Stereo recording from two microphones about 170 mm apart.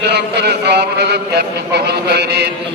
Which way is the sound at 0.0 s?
80° right.